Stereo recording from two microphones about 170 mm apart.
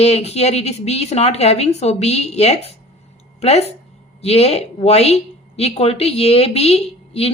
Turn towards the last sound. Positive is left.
turn(degrees=35)  # may be behind; listen again after turning